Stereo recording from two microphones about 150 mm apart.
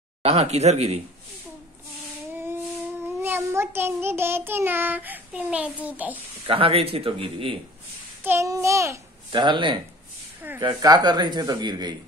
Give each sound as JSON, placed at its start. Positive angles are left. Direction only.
{"t": 0.2, "sound": "speech", "side_deg": -45}
{"t": 3.2, "sound": "child singing", "side_deg": -15}
{"t": 6.4, "sound": "speech", "side_deg": -40}
{"t": 8.2, "sound": "speech", "side_deg": -15}
{"t": 9.3, "sound": "speech", "side_deg": -30}